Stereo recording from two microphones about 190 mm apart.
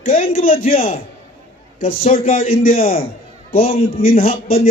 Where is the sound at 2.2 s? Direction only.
45° left (ahead or behind).